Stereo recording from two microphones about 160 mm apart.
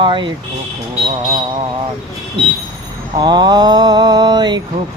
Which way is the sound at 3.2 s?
25° right (ahead or behind).